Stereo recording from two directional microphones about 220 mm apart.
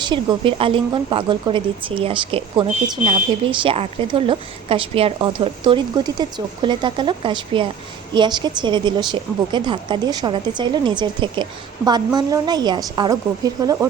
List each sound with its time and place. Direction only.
0.0 s a woman's voice: 20° right (ahead or behind)